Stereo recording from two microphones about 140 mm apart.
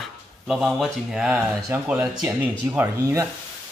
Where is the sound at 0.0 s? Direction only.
Centre (ahead or behind).